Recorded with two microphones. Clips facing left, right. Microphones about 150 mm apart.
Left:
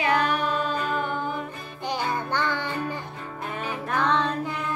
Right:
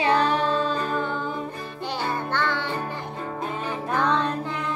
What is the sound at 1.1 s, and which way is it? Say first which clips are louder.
Music: even; 25° right (ahead or behind).